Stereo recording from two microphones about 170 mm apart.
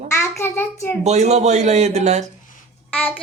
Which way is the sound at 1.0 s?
40° right (ahead or behind).